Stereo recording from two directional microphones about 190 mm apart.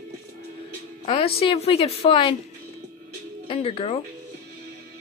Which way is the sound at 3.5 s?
30° left (ahead or behind).